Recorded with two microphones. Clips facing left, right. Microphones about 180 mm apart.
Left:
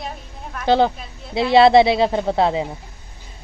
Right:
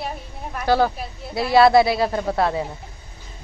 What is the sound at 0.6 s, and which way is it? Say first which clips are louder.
Speech: left 2 dB; 20° left (ahead or behind).